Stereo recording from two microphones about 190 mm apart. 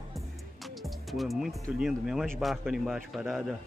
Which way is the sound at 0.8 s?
Centre (ahead or behind).